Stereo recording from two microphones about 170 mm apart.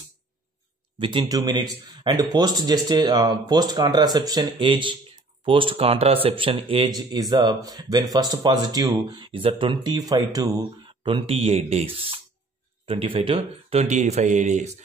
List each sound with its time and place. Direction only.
0.9 s speech: 30° right (ahead or behind); by 14.7 s 45° right (ahead or behind)